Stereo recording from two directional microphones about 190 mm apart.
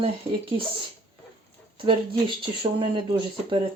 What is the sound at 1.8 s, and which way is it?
Speech, 25° right (ahead or behind).